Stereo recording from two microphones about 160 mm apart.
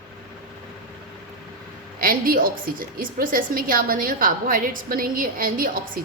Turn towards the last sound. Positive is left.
turn(degrees=-60)  # may be behind; listen again after turning